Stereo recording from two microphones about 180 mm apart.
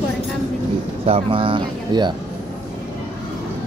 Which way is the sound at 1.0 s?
30° right (ahead or behind).